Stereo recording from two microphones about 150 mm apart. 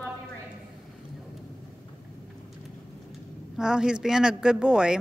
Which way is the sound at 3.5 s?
5° right (ahead or behind).